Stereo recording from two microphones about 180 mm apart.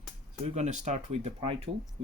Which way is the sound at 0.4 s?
40° right (ahead or behind).